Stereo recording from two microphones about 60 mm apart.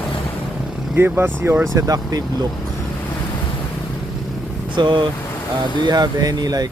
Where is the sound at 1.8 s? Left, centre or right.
Right.